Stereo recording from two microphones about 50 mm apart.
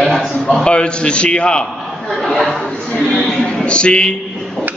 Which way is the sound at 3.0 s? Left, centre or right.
Centre.